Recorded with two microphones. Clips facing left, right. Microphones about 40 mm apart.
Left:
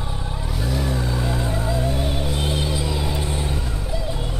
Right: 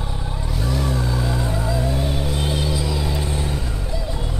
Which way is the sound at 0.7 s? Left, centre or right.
Centre.